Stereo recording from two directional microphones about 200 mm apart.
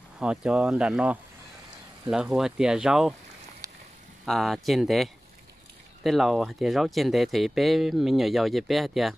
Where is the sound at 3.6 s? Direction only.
20° right (ahead or behind).